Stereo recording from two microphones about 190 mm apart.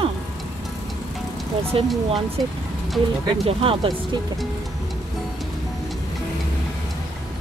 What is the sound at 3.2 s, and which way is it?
Speech, 30° right (ahead or behind).